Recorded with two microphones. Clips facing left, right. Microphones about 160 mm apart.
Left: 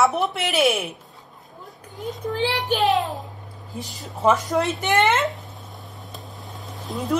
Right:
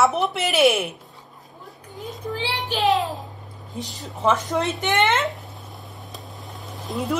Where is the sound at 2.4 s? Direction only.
50° left (ahead or behind).